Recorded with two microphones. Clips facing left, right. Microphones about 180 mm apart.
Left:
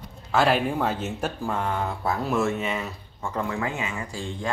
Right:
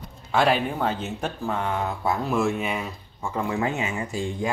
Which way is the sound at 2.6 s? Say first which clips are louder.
Even; 15° right (ahead or behind).